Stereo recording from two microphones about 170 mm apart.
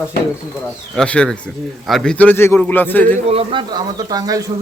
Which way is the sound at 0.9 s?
5° left (ahead or behind).